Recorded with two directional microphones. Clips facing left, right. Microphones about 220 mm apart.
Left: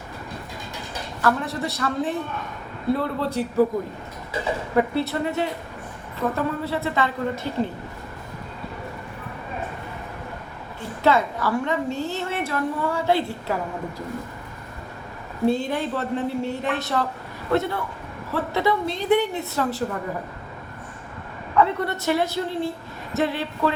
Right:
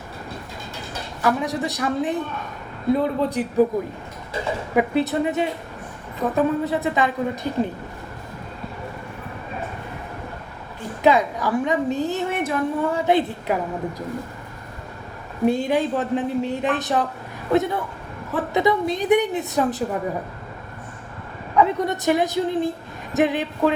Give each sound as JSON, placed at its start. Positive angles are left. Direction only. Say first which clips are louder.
{"t": 1.2, "sound": "a woman's voice", "louder": "right 2 dB", "side_deg": -15}
{"t": 4.7, "sound": "a woman's voice", "louder": "right 2 dB", "side_deg": -15}
{"t": 11.0, "sound": "a woman's voice", "louder": "right 2 dB", "side_deg": -15}
{"t": 15.4, "sound": "a woman's voice", "louder": "right 3 dB", "side_deg": -15}
{"t": 21.6, "sound": "a woman's voice", "louder": "right 2 dB", "side_deg": -15}